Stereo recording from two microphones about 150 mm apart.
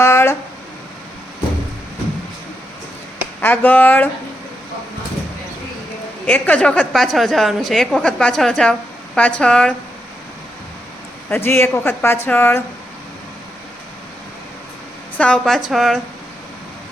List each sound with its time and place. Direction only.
0.0 s a sound: 15° left (ahead or behind)
3.4 s a woman's voice: 10° left (ahead or behind)
6.2 s a woman's voice: 10° left (ahead or behind)
11.3 s a woman's voice: 15° left (ahead or behind)
15.2 s a woman's voice: 5° left (ahead or behind)